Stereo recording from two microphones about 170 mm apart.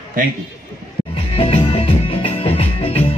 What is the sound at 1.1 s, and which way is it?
Music, 35° left (ahead or behind).